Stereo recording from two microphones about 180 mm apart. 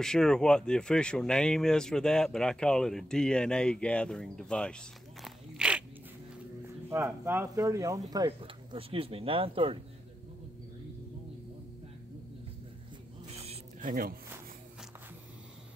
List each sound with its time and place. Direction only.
0.0 s speech: 5° left (ahead or behind)
6.9 s speech: 15° right (ahead or behind); by 9.8 s 30° right (ahead or behind)
13.3 s a sound: 35° right (ahead or behind)
13.7 s speech: 50° right (ahead or behind)